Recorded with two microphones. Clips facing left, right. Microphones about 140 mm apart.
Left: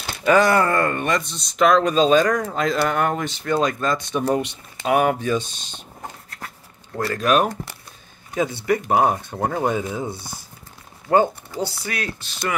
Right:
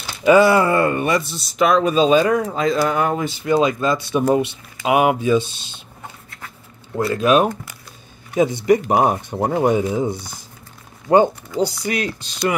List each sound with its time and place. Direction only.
0.2 s speech: 10° right (ahead or behind)
6.9 s speech: 10° right (ahead or behind)